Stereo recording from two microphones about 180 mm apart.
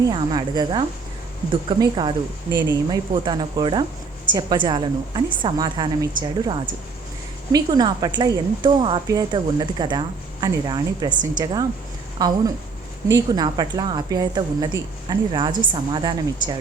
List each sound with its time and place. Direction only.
0.0 s a woman's voice: 25° right (ahead or behind)
7.5 s a woman's voice: 20° right (ahead or behind)